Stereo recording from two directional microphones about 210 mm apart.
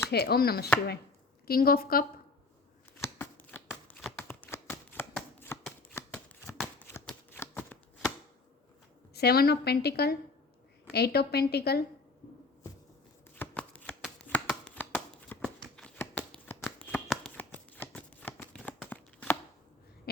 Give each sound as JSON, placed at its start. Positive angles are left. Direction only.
{"t": 0.1, "sound": "a woman's voice", "side_deg": 50}
{"t": 3.0, "sound": "shuffling cards", "side_deg": 10}
{"t": 9.1, "sound": "a woman's voice", "side_deg": 50}
{"t": 13.3, "sound": "shuffling cards", "side_deg": 10}
{"t": 18.9, "sound": "a sound", "side_deg": 10}